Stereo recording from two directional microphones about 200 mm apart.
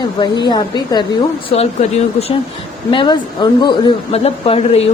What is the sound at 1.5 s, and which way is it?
A woman's voice, 30° left (ahead or behind).